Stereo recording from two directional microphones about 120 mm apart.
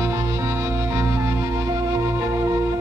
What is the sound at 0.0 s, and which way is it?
Music, 20° right (ahead or behind).